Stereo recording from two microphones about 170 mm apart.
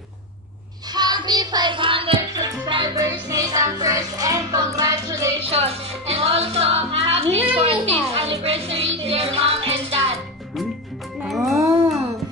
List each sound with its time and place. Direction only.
0.9 s music: 25° right (ahead or behind)
5.5 s music: 35° right (ahead or behind)
11.1 s music: centre (ahead or behind)